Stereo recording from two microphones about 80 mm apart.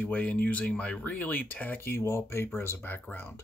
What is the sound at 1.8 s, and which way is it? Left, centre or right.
Speech, left.